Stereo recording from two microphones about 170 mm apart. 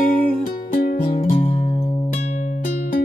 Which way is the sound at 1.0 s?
55° left (ahead or behind).